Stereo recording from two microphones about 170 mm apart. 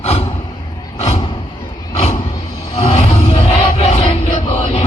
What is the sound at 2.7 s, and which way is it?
Crowd, 35° left (ahead or behind).